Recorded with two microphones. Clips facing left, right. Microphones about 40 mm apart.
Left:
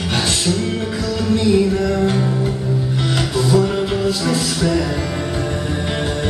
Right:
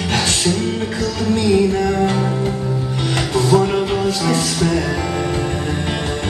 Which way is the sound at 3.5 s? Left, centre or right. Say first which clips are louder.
Right 2 dB; right.